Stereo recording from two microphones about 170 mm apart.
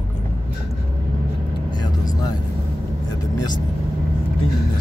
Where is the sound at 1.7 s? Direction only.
25° left (ahead or behind).